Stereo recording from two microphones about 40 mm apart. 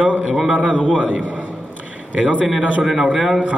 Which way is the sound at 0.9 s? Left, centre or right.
Right.